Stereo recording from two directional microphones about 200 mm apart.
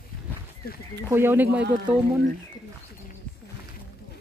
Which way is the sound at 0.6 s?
50° left (ahead or behind).